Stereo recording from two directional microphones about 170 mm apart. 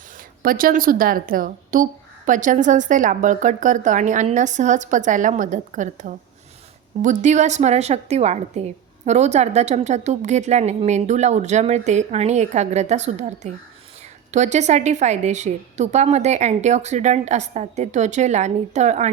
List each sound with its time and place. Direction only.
0.4 s a woman's voice: 55° right (ahead or behind)